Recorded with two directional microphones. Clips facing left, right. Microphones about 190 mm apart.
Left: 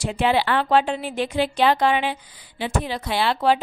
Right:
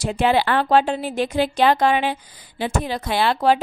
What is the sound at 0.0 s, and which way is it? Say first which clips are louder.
Speech: right 2 dB; 40° right (ahead or behind).